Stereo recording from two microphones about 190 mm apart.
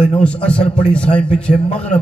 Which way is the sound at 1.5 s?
35° left (ahead or behind).